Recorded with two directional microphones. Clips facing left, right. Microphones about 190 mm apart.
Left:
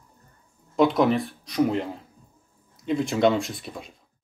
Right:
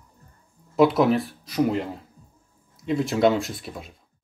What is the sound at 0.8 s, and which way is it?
Speech, 5° right (ahead or behind).